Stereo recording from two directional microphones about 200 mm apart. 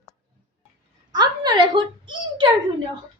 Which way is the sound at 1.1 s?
20° right (ahead or behind).